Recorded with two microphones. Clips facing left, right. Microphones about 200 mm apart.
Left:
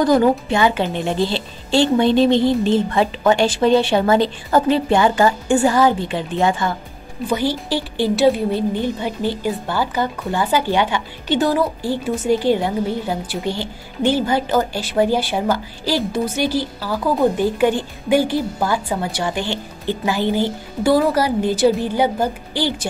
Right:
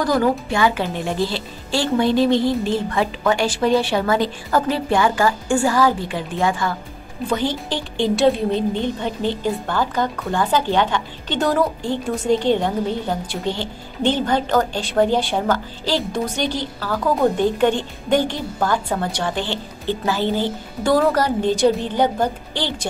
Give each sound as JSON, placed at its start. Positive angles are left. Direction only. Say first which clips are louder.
{"t": 0.0, "sound": "a woman's voice", "louder": "left 4 dB", "side_deg": 20}
{"t": 7.2, "sound": "a woman's voice", "louder": "left 2 dB", "side_deg": 10}